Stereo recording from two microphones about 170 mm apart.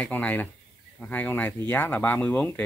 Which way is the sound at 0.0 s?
10° left (ahead or behind).